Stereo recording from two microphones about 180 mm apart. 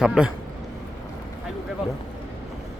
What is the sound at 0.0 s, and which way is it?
Speech, 5° right (ahead or behind).